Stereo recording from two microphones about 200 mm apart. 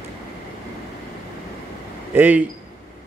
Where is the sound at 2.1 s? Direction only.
10° right (ahead or behind).